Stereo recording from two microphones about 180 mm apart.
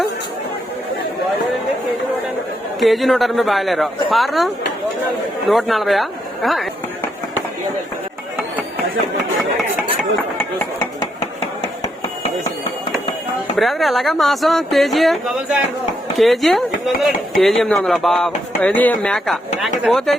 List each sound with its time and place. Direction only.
2.8 s speech: centre (ahead or behind)
5.5 s speech: centre (ahead or behind)
13.6 s speech: centre (ahead or behind)